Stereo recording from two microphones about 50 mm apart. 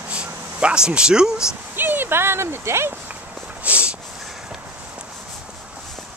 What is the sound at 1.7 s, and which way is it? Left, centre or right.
Speech, right.